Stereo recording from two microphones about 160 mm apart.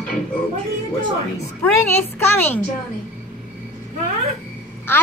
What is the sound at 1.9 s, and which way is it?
Speech, 15° left (ahead or behind).